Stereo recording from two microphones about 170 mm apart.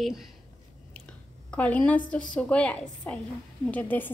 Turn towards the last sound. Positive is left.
turn(degrees=10)  # may be behind; listen again after turning